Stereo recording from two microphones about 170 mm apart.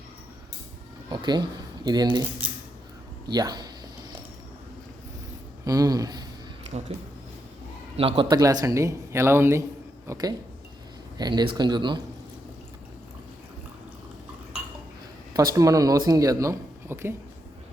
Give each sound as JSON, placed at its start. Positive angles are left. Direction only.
{"t": 1.1, "sound": "speech", "side_deg": -25}
{"t": 3.2, "sound": "speech", "side_deg": -25}
{"t": 5.6, "sound": "speech", "side_deg": -20}
{"t": 7.9, "sound": "speech", "side_deg": -30}
{"t": 15.5, "sound": "speech", "side_deg": -20}